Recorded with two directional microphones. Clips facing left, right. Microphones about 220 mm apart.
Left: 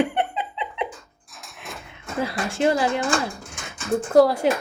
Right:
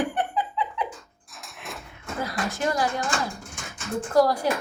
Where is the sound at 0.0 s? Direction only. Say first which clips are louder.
Left 3 dB; 25° left (ahead or behind).